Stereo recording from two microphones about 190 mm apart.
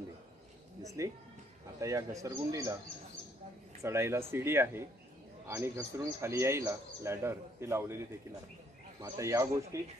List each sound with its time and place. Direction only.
0.8 s a man's voice: 15° right (ahead or behind)
3.8 s a man's voice: 15° right (ahead or behind)
9.0 s a man's voice: 15° right (ahead or behind)